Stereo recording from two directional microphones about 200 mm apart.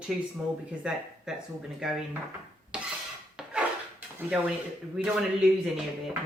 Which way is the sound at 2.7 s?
5° right (ahead or behind).